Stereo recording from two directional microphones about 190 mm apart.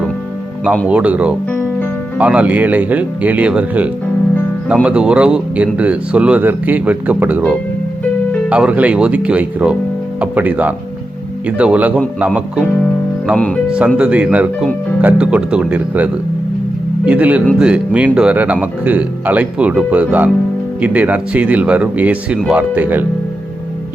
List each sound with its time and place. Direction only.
0.9 s speech: 5° right (ahead or behind)
17.1 s speech: 10° right (ahead or behind)